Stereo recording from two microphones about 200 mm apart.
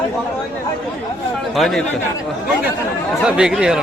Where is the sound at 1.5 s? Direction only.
Centre (ahead or behind).